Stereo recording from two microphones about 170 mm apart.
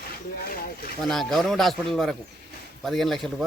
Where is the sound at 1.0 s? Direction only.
Centre (ahead or behind).